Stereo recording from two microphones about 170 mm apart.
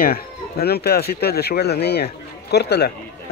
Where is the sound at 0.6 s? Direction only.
70° left (ahead or behind).